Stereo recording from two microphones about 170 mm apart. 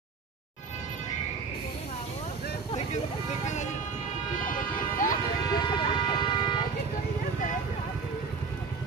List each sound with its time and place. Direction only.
3.4 s vehicle: 45° left (ahead or behind)
4.5 s a sound: 50° left (ahead or behind)
5.7 s vehicle: 30° left (ahead or behind)